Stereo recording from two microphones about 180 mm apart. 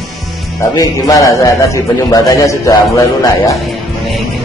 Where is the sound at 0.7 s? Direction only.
20° left (ahead or behind).